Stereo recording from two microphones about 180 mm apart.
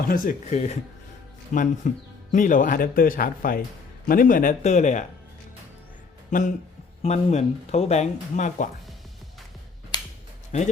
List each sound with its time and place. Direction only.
0.1 s speech: 45° left (ahead or behind)
6.3 s speech: 45° left (ahead or behind)
10.5 s speech: 40° left (ahead or behind)